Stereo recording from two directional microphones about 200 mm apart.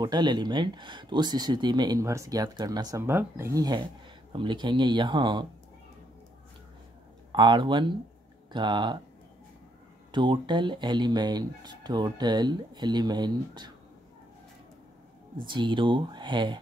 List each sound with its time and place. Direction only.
0.0 s speech: 20° right (ahead or behind)
7.3 s speech: 25° right (ahead or behind)
10.1 s speech: 25° right (ahead or behind)
15.5 s speech: 25° right (ahead or behind)